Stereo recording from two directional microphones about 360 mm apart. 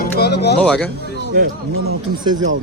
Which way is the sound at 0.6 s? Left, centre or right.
Centre.